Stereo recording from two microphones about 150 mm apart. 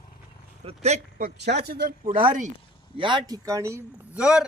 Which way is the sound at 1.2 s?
90° right.